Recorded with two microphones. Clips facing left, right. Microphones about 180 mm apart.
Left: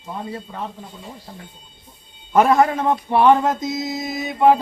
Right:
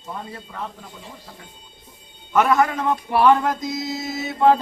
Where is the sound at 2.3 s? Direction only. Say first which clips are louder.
Left 3 dB; 30° left (ahead or behind).